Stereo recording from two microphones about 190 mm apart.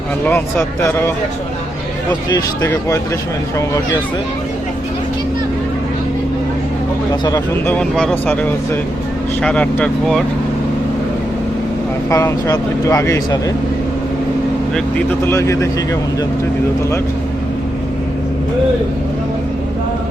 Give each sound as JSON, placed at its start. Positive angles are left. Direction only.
{"t": 0.3, "sound": "speech", "side_deg": 10}
{"t": 2.3, "sound": "speech", "side_deg": 15}
{"t": 7.3, "sound": "speech", "side_deg": 20}
{"t": 7.8, "sound": "speech", "side_deg": 5}
{"t": 12.1, "sound": "speech", "side_deg": 15}
{"t": 14.9, "sound": "speech", "side_deg": 10}